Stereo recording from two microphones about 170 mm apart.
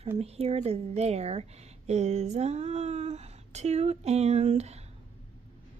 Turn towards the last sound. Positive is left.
turn(degrees=-40)  # may be behind; listen again after turning